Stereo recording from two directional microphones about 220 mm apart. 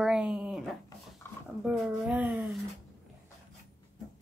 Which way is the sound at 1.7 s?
5° right (ahead or behind).